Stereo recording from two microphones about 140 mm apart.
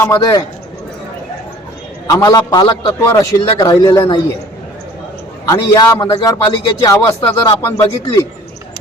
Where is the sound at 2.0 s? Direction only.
30° left (ahead or behind).